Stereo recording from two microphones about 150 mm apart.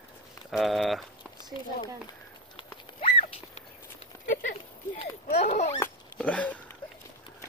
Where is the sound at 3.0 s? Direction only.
40° left (ahead or behind).